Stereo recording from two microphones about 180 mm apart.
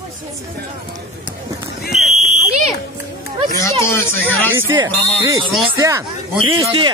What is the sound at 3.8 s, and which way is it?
Speech, 15° left (ahead or behind).